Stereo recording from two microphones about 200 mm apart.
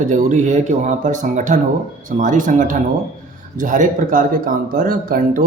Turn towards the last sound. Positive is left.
turn(degrees=-45)  # may be behind; listen again after turning